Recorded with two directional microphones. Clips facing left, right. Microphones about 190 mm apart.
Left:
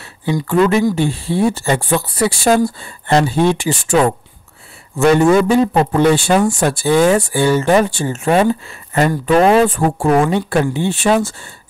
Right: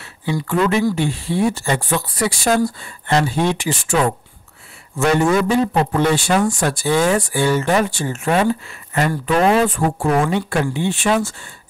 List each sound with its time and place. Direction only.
0.2 s speech: 30° left (ahead or behind)